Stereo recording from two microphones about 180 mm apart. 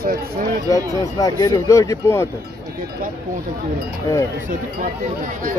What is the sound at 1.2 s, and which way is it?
Speech, 20° left (ahead or behind).